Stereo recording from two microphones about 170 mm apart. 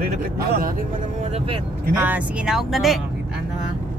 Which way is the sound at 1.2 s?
35° right (ahead or behind).